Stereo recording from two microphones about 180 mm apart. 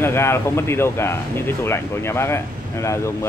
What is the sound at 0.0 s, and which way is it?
Speech, 15° left (ahead or behind).